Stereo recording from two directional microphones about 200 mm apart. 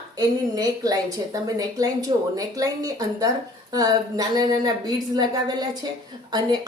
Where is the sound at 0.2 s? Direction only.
20° right (ahead or behind).